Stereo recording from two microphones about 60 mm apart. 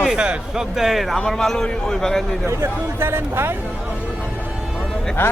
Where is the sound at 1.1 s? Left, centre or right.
Centre.